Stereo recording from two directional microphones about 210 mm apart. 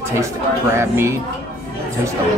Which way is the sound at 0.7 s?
10° right (ahead or behind).